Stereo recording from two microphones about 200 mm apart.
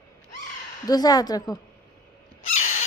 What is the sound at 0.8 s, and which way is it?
Speech, 20° left (ahead or behind).